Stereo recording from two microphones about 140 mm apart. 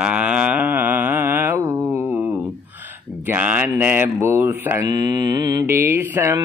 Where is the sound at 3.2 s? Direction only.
10° right (ahead or behind).